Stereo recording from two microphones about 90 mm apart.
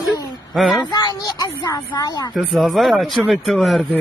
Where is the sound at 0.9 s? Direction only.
45° left (ahead or behind).